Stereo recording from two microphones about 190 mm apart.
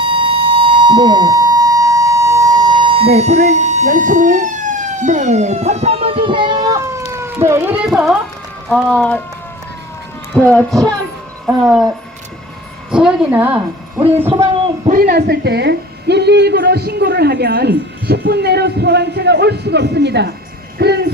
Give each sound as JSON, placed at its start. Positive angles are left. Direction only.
{"t": 0.0, "sound": "a sound", "side_deg": -25}
{"t": 8.7, "sound": "speech", "side_deg": 5}
{"t": 10.5, "sound": "speech", "side_deg": 5}
{"t": 11.4, "sound": "a woman's voice", "side_deg": -5}
{"t": 12.9, "sound": "a woman's voice", "side_deg": -5}
{"t": 14.8, "sound": "a woman's voice", "side_deg": -50}
{"t": 20.7, "sound": "a sound", "side_deg": -60}